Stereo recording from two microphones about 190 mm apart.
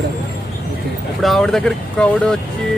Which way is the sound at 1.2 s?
Centre (ahead or behind).